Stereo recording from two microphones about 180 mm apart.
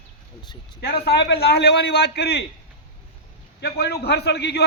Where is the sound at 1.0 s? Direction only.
65° left (ahead or behind).